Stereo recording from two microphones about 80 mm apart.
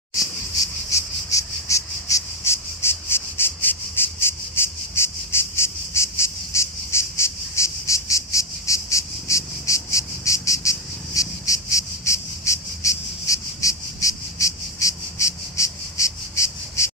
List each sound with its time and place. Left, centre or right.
0.8 s cricket: left